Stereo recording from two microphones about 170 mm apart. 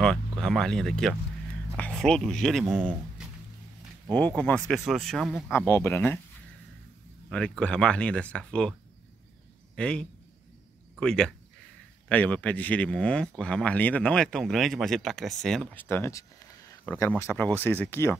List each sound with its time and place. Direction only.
0.0 s speech: 5° left (ahead or behind)
5.5 s speech: 15° left (ahead or behind)
7.2 s speech: 5° left (ahead or behind)
9.8 s a man's voice: 5° left (ahead or behind)